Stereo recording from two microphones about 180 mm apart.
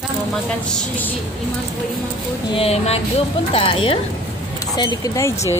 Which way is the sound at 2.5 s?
35° left (ahead or behind).